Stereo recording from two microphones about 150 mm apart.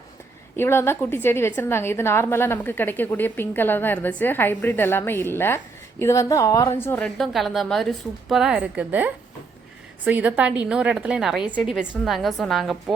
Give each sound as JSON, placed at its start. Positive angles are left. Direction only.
{"t": 0.5, "sound": "a woman's voice", "side_deg": 15}
{"t": 7.2, "sound": "a woman's voice", "side_deg": 0}